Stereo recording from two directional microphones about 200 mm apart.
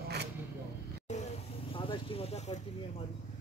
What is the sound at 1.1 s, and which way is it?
Vehicle, 35° left (ahead or behind).